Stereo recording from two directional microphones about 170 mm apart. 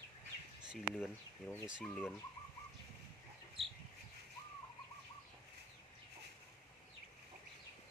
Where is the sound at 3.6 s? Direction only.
Centre (ahead or behind).